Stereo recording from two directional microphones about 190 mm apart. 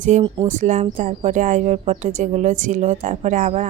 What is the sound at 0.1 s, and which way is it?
A woman's voice, 40° right (ahead or behind).